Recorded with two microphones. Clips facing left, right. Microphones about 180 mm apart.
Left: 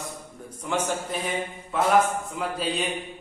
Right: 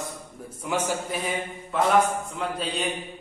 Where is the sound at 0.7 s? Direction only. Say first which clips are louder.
Even; 5° right (ahead or behind).